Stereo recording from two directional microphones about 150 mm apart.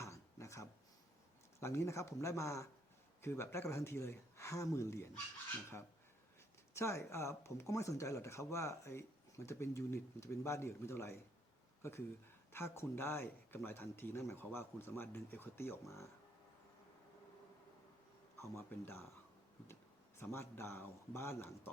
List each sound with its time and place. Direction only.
0.0 s a sound: 20° left (ahead or behind)
1.5 s speech: 20° left (ahead or behind)
6.7 s speech: 20° left (ahead or behind)
18.3 s speech: 15° left (ahead or behind)
20.1 s speech: 15° left (ahead or behind)